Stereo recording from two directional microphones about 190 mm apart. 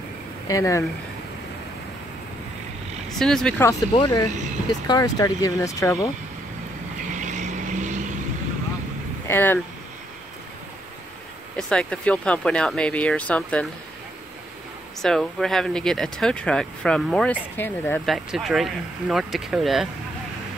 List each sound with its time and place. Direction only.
0.5 s speech: 15° left (ahead or behind)
3.2 s speech: 5° left (ahead or behind)
4.0 s speech: 20° left (ahead or behind)
7.2 s vehicle: 40° right (ahead or behind)
9.3 s speech: 10° left (ahead or behind)
11.5 s speech: 5° left (ahead or behind)
15.0 s speech: centre (ahead or behind)
18.0 s speech: centre (ahead or behind)